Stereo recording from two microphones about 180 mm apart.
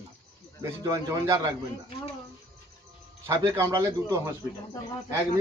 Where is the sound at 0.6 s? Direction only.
20° right (ahead or behind).